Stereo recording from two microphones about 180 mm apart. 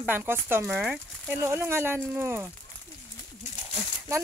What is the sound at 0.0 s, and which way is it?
Speech, 10° right (ahead or behind).